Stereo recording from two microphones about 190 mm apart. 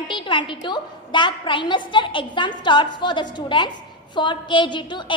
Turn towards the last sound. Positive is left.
turn(degrees=25)  # may be behind; listen again after turning